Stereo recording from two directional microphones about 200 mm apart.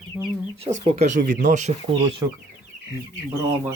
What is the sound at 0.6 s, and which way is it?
Speech, 30° right (ahead or behind).